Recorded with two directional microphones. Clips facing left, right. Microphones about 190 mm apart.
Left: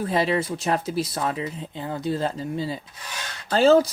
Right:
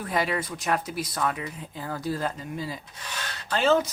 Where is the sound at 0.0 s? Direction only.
25° left (ahead or behind).